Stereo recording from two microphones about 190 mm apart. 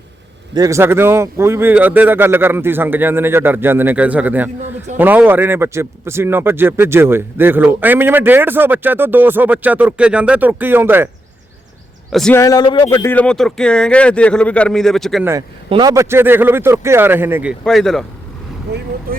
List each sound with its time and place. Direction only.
0.5 s a man's voice: 15° right (ahead or behind)
12.1 s speech: 5° left (ahead or behind)
12.4 s speech: 20° left (ahead or behind)
13.0 s speech: 10° left (ahead or behind)
15.2 s a man's voice: 15° right (ahead or behind)
17.6 s speech: centre (ahead or behind)